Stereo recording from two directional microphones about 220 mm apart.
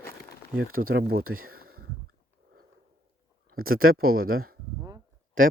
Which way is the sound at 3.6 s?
70° right (ahead or behind).